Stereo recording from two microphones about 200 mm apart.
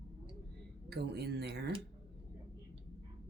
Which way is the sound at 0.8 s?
55° right (ahead or behind).